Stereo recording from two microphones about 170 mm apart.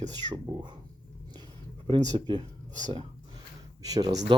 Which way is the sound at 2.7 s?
45° right (ahead or behind).